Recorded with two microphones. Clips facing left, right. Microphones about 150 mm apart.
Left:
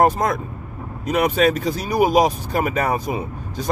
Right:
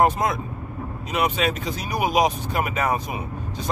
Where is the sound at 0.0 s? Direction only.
45° left (ahead or behind).